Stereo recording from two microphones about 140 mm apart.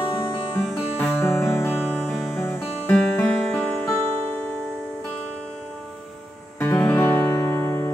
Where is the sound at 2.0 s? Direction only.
5° left (ahead or behind).